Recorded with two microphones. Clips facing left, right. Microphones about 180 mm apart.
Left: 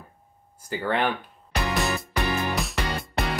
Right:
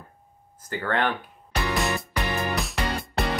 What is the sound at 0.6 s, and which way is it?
Speech, 10° left (ahead or behind).